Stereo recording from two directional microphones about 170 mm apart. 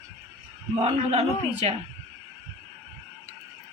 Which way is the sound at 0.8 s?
35° right (ahead or behind).